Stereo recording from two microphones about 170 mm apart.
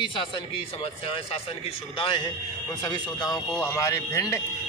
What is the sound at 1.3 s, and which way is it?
Speech, 35° left (ahead or behind).